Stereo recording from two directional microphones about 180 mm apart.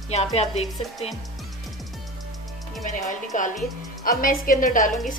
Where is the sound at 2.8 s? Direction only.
45° left (ahead or behind).